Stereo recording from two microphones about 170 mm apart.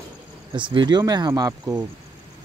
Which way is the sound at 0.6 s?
30° right (ahead or behind).